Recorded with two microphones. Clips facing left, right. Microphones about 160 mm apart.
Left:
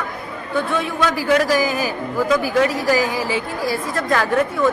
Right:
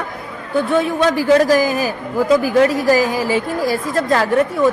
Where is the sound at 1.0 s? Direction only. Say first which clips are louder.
Right 4 dB; 35° right (ahead or behind).